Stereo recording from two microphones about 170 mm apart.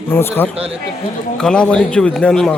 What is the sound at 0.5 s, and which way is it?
Speech, 35° right (ahead or behind).